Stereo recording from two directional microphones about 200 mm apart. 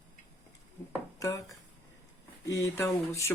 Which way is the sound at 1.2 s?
15° left (ahead or behind).